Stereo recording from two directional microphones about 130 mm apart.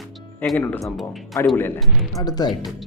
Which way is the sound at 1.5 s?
15° left (ahead or behind).